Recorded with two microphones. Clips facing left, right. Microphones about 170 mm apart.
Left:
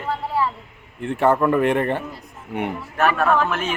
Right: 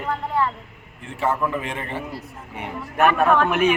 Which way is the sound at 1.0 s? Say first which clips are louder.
Left 6 dB; 65° left (ahead or behind).